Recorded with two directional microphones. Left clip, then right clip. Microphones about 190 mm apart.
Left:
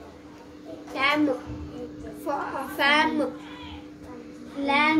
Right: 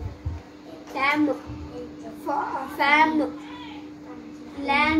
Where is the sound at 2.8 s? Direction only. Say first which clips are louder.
Right 2 dB; 15° left (ahead or behind).